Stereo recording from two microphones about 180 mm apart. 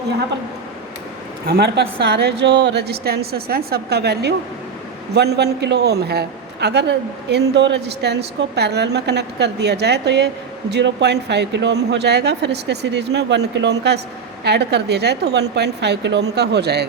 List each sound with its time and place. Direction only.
1.5 s a woman's voice: 65° right (ahead or behind)